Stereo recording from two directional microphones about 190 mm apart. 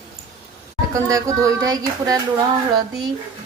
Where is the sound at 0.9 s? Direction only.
15° right (ahead or behind).